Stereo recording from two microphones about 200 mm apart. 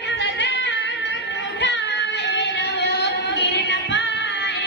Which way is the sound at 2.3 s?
60° left (ahead or behind).